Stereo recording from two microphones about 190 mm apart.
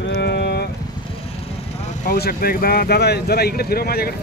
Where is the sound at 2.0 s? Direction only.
55° left (ahead or behind).